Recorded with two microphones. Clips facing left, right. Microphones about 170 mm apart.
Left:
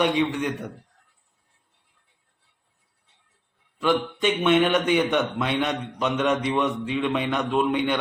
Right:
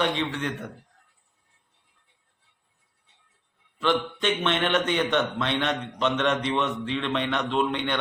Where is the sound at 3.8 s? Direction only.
10° left (ahead or behind).